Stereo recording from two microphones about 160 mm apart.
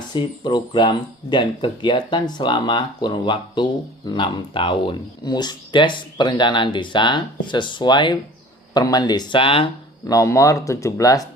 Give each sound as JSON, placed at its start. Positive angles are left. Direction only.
{"t": 0.1, "sound": "speech", "side_deg": 30}
{"t": 10.1, "sound": "speech", "side_deg": 20}